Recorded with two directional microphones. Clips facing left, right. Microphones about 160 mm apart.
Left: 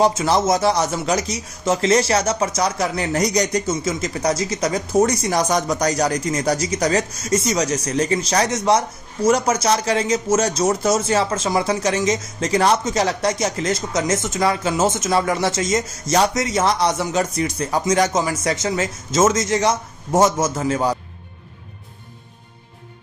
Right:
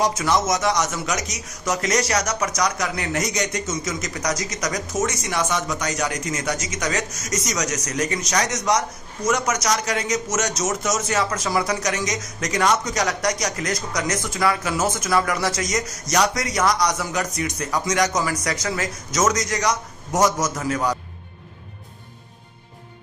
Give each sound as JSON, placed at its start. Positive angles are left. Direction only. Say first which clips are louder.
{"t": 0.0, "sound": "speech", "louder": "left 4 dB", "side_deg": 25}